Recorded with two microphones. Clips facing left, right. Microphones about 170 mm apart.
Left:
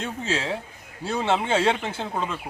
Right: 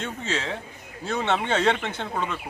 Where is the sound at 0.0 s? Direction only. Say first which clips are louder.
Left 2 dB; 30° left (ahead or behind).